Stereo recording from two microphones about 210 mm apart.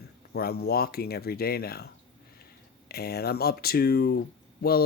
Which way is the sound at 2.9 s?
50° left (ahead or behind).